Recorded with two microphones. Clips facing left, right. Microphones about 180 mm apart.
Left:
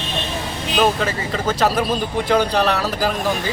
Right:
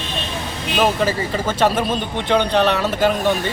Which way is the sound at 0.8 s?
Centre (ahead or behind).